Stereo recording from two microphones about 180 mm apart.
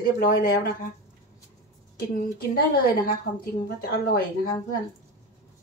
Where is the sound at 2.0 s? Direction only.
60° left (ahead or behind).